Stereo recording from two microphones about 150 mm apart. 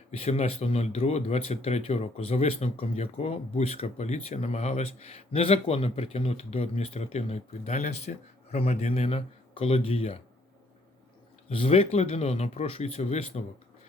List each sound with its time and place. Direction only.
0.1 s speech: 45° left (ahead or behind)
11.4 s speech: 40° left (ahead or behind)